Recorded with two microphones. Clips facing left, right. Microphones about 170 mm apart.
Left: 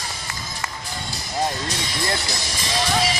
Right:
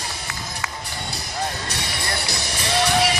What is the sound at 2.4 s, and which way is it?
Music, 65° right (ahead or behind).